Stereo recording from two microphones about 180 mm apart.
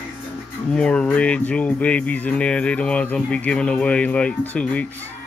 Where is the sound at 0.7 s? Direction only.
5° left (ahead or behind).